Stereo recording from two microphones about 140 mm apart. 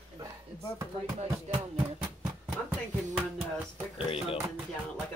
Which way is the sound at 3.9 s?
45° left (ahead or behind).